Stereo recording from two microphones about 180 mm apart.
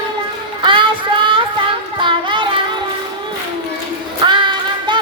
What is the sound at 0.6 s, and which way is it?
Child singing, 25° right (ahead or behind).